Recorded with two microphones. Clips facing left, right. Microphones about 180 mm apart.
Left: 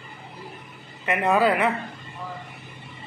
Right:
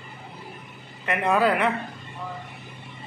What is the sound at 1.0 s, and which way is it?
Speech, 5° left (ahead or behind).